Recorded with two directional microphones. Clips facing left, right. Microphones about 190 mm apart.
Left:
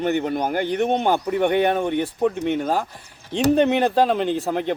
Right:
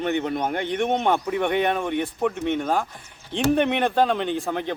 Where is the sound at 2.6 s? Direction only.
30° left (ahead or behind).